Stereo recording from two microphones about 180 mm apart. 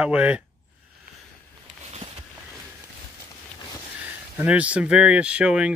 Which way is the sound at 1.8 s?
35° right (ahead or behind).